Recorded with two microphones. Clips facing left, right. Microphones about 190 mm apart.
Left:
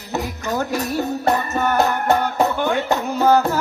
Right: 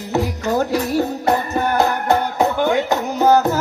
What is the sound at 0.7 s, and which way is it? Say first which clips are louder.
Music: right 3 dB; 20° right (ahead or behind).